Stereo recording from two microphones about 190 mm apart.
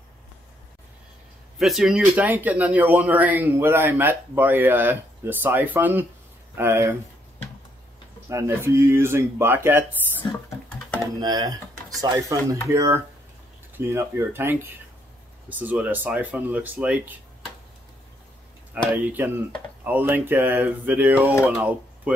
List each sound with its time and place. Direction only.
1.6 s speech: centre (ahead or behind)
8.3 s speech: 15° right (ahead or behind)
11.1 s speech: 20° right (ahead or behind)
19.0 s speech: 10° right (ahead or behind)